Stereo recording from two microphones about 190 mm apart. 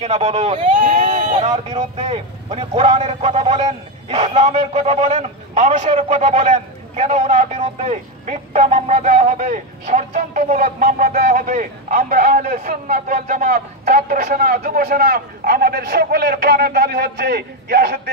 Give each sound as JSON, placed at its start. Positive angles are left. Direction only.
{"t": 0.0, "sound": "a man's voice", "side_deg": -35}